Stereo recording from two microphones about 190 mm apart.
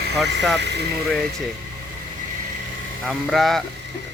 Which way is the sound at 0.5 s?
65° right (ahead or behind).